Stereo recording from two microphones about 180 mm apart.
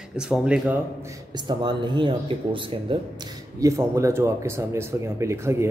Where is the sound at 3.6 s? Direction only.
15° right (ahead or behind).